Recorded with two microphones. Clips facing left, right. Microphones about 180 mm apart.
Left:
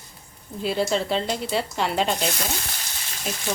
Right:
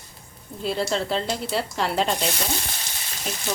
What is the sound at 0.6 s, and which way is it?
Speech, centre (ahead or behind).